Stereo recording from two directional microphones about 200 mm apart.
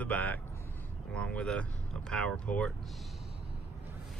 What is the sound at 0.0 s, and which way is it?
Speech, 5° left (ahead or behind).